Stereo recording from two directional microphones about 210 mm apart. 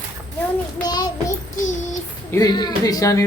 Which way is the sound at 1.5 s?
35° left (ahead or behind).